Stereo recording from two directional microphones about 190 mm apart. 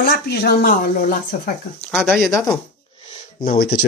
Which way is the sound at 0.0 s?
55° left (ahead or behind).